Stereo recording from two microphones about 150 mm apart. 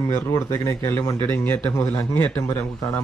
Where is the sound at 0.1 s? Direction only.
20° left (ahead or behind).